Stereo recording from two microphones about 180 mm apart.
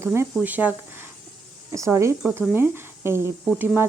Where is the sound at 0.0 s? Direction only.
15° right (ahead or behind).